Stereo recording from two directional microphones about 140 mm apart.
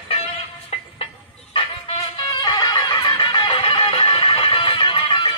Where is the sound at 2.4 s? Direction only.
30° left (ahead or behind).